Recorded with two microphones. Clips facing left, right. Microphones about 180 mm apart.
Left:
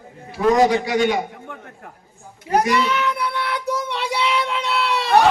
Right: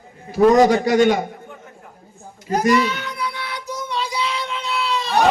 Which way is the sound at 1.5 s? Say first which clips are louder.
Left 3 dB; 65° left (ahead or behind).